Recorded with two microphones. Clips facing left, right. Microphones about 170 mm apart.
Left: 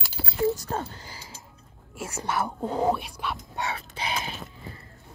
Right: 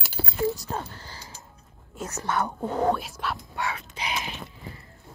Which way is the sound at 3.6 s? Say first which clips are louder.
Even; 30° left (ahead or behind).